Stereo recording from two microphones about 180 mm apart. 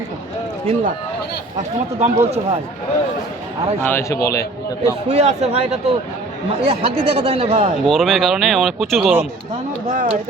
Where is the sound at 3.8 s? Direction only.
10° left (ahead or behind).